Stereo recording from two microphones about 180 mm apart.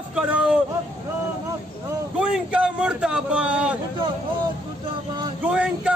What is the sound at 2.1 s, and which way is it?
A man's voice, 5° right (ahead or behind).